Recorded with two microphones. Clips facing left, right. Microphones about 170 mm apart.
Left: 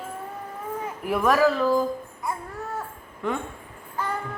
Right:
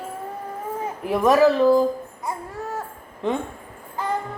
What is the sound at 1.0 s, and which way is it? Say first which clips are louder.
Speech: right 4 dB; 20° right (ahead or behind).